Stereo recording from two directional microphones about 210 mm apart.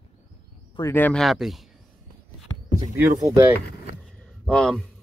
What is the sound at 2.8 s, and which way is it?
Speech, 15° right (ahead or behind).